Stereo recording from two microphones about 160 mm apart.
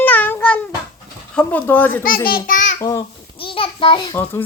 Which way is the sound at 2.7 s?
20° left (ahead or behind).